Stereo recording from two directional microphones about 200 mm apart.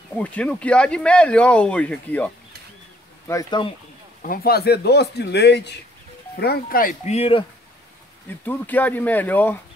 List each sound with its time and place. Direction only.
0.2 s speech: 5° left (ahead or behind)
3.3 s speech: 20° left (ahead or behind)
4.2 s speech: 45° left (ahead or behind); by 7.4 s 30° left (ahead or behind)
8.3 s speech: 10° left (ahead or behind)